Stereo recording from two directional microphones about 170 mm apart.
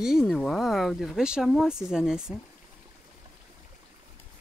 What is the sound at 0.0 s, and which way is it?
Speech, centre (ahead or behind).